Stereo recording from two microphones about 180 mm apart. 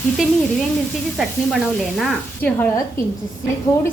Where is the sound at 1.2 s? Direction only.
Centre (ahead or behind).